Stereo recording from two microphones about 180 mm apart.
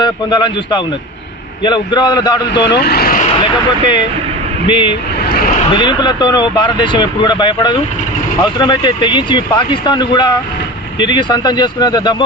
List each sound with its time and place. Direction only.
0.0 s speech: 25° left (ahead or behind)
2.5 s speech: 70° left (ahead or behind); by 3.2 s 55° left (ahead or behind)
3.4 s speech: 25° left (ahead or behind)